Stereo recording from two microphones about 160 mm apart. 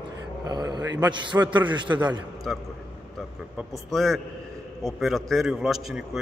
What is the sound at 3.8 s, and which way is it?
Speech, centre (ahead or behind).